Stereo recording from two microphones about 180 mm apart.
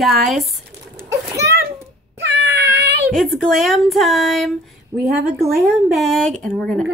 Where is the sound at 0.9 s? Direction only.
15° right (ahead or behind).